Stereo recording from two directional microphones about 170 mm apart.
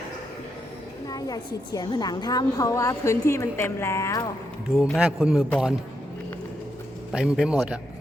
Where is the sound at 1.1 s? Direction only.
20° left (ahead or behind).